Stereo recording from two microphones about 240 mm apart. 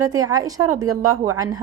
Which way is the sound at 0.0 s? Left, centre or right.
Centre.